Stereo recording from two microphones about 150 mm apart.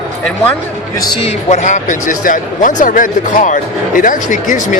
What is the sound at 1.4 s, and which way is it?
Speech, 50° left (ahead or behind).